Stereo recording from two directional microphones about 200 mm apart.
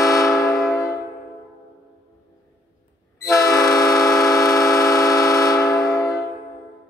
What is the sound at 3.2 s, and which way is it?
Train, 20° left (ahead or behind).